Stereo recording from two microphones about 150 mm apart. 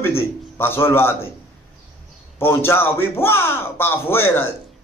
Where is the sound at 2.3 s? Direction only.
15° left (ahead or behind).